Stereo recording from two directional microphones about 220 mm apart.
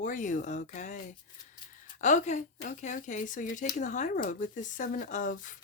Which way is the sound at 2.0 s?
35° left (ahead or behind).